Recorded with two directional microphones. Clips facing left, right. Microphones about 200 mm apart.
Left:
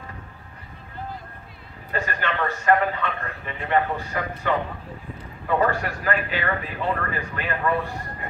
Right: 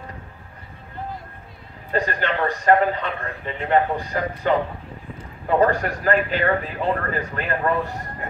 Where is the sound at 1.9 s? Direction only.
35° right (ahead or behind).